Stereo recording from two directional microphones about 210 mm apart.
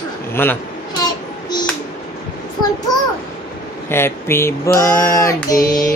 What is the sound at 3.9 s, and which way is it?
Child singing, 10° left (ahead or behind).